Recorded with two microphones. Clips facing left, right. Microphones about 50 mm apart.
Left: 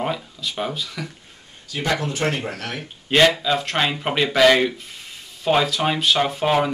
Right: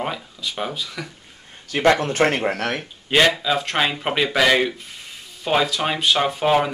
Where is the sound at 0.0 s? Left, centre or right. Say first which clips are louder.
Left 1 dB; centre.